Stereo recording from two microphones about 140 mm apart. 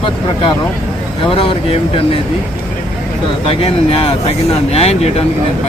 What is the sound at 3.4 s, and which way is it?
Speech, 45° left (ahead or behind).